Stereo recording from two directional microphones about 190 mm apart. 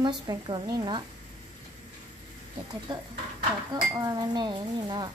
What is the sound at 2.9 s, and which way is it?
Speech, 25° right (ahead or behind).